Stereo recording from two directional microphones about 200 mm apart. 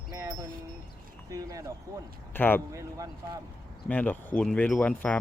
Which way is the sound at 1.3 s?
15° right (ahead or behind).